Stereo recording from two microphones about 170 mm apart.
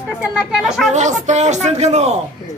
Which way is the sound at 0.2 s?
5° right (ahead or behind).